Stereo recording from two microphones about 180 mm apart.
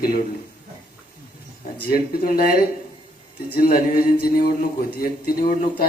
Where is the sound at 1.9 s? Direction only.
55° left (ahead or behind).